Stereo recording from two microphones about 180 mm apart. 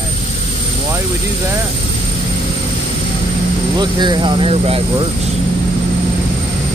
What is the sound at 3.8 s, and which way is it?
Speech, 25° right (ahead or behind).